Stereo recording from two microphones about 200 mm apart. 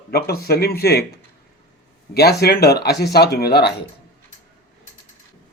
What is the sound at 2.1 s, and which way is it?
A man's voice, 50° left (ahead or behind).